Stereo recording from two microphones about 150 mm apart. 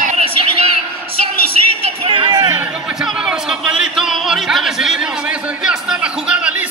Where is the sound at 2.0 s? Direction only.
30° right (ahead or behind).